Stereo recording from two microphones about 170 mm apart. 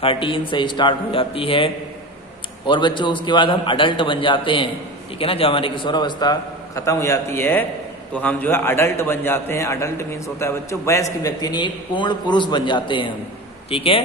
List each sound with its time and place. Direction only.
0.0 s a man's voice: 30° left (ahead or behind)